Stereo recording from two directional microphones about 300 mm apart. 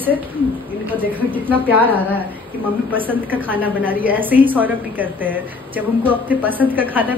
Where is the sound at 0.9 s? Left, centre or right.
Centre.